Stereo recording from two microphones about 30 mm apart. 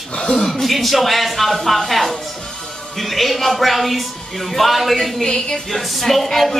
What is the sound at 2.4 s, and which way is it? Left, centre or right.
Music, left.